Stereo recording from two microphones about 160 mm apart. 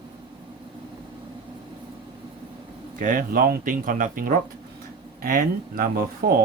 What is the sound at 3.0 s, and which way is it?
Speech, 60° right (ahead or behind).